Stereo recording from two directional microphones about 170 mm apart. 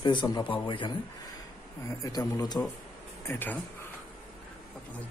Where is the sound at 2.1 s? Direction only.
20° left (ahead or behind).